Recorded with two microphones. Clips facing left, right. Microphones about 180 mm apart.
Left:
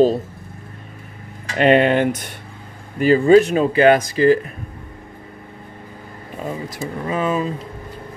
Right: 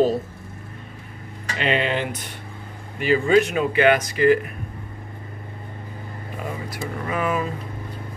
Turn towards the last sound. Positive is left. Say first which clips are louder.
# left 3 dB
turn(degrees=25)  # may be behind; listen again after turning